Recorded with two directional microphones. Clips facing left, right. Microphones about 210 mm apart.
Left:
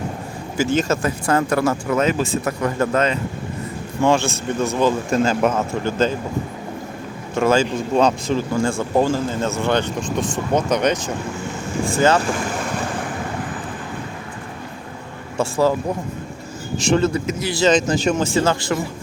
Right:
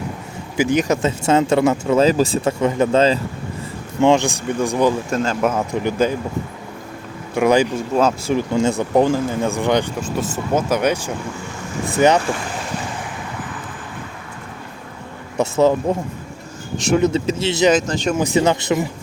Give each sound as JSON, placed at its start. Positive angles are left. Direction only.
{"t": 0.5, "sound": "speech", "side_deg": -15}
{"t": 4.0, "sound": "speech", "side_deg": -20}
{"t": 5.1, "sound": "speech", "side_deg": 0}
{"t": 5.5, "sound": "speech", "side_deg": -15}
{"t": 7.3, "sound": "speech", "side_deg": -15}
{"t": 7.9, "sound": "speech", "side_deg": -5}
{"t": 8.4, "sound": "speech", "side_deg": -20}
{"t": 15.4, "sound": "speech", "side_deg": -20}
{"t": 16.7, "sound": "speech", "side_deg": 0}
{"t": 17.0, "sound": "speech", "side_deg": -25}
{"t": 17.8, "sound": "speech", "side_deg": 5}
{"t": 18.1, "sound": "speech", "side_deg": -15}